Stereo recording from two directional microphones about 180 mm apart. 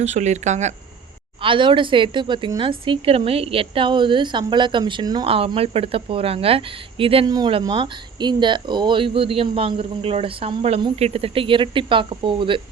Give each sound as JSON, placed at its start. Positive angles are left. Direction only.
{"t": 0.0, "sound": "speech", "side_deg": -40}
{"t": 1.4, "sound": "speech", "side_deg": -30}